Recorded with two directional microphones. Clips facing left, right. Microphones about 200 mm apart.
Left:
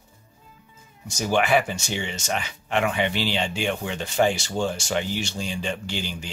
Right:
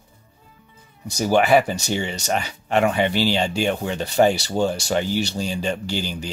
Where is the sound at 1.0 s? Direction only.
40° right (ahead or behind).